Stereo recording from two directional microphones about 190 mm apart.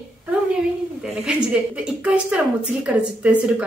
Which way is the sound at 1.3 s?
5° right (ahead or behind).